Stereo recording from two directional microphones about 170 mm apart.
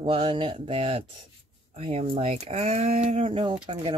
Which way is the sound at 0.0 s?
30° right (ahead or behind).